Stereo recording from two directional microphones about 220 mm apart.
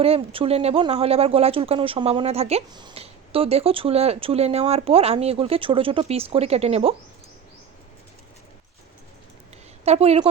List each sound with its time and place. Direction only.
0.0 s speech: 25° right (ahead or behind)
9.8 s speech: 30° right (ahead or behind)